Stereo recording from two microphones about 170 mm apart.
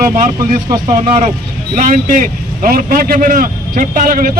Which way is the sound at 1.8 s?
50° right (ahead or behind).